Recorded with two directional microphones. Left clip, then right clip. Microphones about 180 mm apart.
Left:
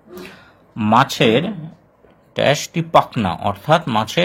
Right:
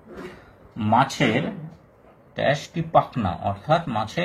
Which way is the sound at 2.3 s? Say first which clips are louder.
Left 6 dB; 50° left (ahead or behind).